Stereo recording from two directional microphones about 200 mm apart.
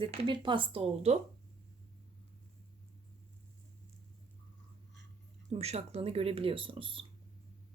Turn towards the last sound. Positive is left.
turn(degrees=-25)  # may be behind; listen again after turning